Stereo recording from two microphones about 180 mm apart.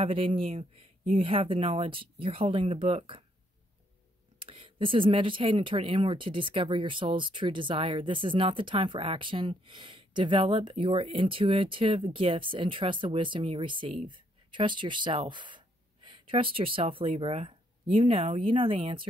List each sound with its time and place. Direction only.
0.0 s speech: 30° right (ahead or behind)
4.4 s speech: 30° right (ahead or behind)